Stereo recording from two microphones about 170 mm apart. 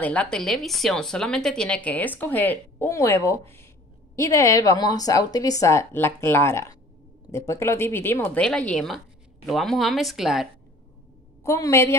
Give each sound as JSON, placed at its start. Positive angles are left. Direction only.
{"t": 0.0, "sound": "speech", "side_deg": 5}
{"t": 11.4, "sound": "speech", "side_deg": 15}